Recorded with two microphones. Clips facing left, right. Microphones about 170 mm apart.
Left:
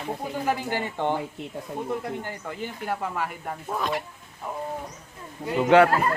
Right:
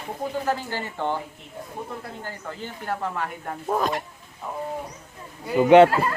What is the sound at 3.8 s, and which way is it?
Speech, 45° right (ahead or behind).